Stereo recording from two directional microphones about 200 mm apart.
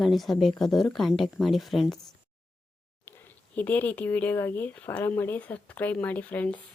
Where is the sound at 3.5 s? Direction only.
10° left (ahead or behind).